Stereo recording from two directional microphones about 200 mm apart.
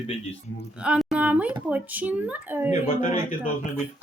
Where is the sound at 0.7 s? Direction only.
5° right (ahead or behind).